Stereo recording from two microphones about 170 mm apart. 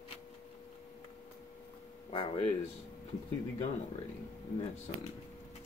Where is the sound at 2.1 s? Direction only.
30° left (ahead or behind).